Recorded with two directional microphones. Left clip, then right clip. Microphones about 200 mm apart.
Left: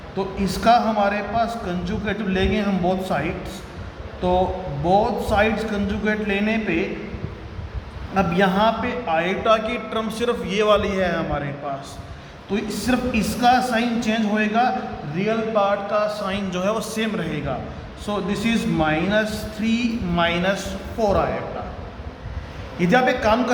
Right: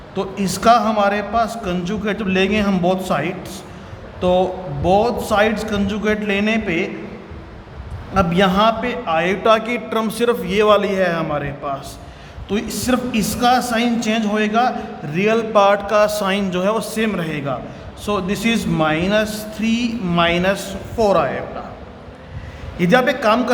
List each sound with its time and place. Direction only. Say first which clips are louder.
0.2 s a man's voice: right 3 dB; 35° right (ahead or behind)
8.1 s a man's voice: right 4 dB; 30° right (ahead or behind)
15.1 s a man's voice: right 6 dB; 55° right (ahead or behind)
16.5 s a man's voice: right 4 dB; 30° right (ahead or behind)
22.8 s a man's voice: right 3 dB; 30° right (ahead or behind)